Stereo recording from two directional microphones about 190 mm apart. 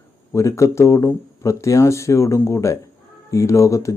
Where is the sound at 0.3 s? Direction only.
15° left (ahead or behind).